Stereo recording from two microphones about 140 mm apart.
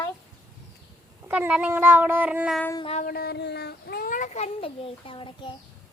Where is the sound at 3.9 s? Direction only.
85° left.